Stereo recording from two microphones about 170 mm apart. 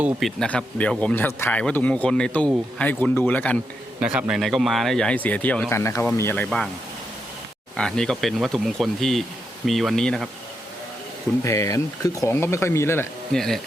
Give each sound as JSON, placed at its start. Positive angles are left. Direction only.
{"t": 0.0, "sound": "speech", "side_deg": 0}
{"t": 4.0, "sound": "speech", "side_deg": -5}
{"t": 7.8, "sound": "speech", "side_deg": 5}
{"t": 11.4, "sound": "speech", "side_deg": 20}
{"t": 13.3, "sound": "speech", "side_deg": 0}